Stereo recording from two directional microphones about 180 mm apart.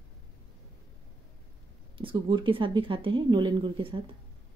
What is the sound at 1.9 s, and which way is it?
Speech, 30° right (ahead or behind).